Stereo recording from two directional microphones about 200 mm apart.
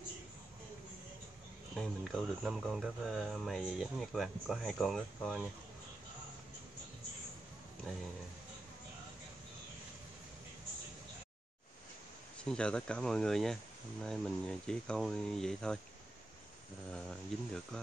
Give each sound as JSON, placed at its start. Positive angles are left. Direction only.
{"t": 1.8, "sound": "speech", "side_deg": 0}
{"t": 12.4, "sound": "speech", "side_deg": 5}
{"t": 17.3, "sound": "speech", "side_deg": 0}